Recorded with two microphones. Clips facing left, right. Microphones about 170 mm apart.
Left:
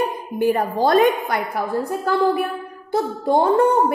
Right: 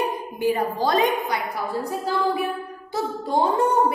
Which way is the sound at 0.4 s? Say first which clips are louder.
Left 4 dB; 50° left (ahead or behind).